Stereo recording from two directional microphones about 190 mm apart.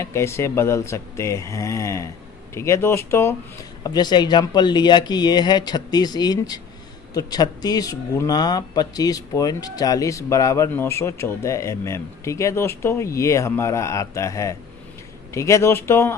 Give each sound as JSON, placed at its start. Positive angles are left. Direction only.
{"t": 0.0, "sound": "speech", "side_deg": 15}